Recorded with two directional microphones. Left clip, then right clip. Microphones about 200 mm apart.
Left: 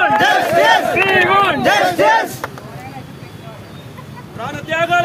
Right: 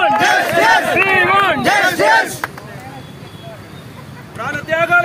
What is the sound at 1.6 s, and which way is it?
Speech, 5° left (ahead or behind).